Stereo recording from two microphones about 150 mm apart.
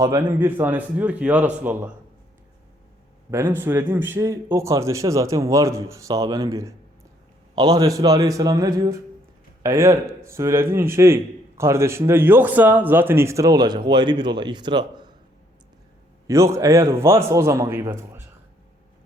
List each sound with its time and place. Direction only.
0.0 s a man's voice: 15° right (ahead or behind)
3.3 s a man's voice: 15° right (ahead or behind)
16.2 s a man's voice: 20° right (ahead or behind)